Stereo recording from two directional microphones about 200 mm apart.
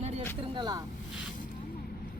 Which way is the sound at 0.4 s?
25° right (ahead or behind).